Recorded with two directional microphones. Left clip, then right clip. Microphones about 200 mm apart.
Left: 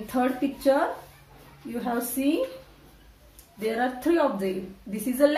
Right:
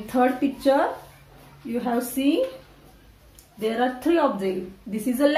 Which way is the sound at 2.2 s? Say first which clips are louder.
Right 3 dB; 20° right (ahead or behind).